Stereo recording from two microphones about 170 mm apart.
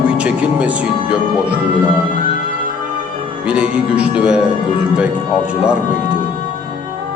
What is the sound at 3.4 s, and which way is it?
Speech, 5° right (ahead or behind).